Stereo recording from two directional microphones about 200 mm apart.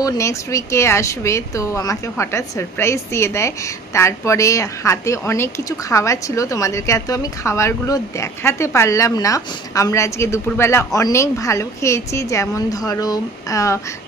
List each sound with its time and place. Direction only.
0.0 s speech: 15° left (ahead or behind)